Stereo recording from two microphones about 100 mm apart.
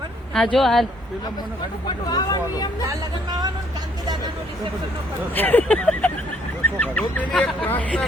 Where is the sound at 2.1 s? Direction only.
40° left (ahead or behind).